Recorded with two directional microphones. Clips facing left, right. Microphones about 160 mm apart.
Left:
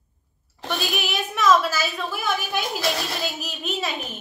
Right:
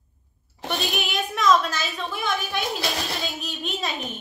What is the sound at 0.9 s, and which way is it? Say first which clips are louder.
A woman's voice: even; centre (ahead or behind).